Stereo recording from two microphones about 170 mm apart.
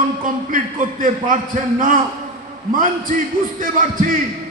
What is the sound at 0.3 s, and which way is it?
A man's voice, 55° right (ahead or behind).